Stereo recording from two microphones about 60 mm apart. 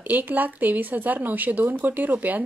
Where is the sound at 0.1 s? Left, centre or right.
Right.